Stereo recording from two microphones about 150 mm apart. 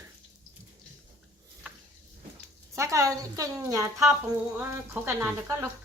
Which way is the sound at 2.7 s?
20° right (ahead or behind).